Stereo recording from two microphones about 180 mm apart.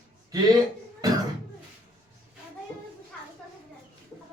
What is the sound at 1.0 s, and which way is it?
Cough, 20° right (ahead or behind).